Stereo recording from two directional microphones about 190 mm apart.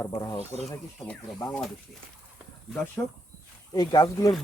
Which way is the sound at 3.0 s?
15° left (ahead or behind).